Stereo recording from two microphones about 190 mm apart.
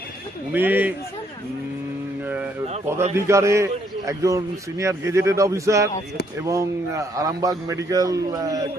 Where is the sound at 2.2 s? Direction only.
5° right (ahead or behind).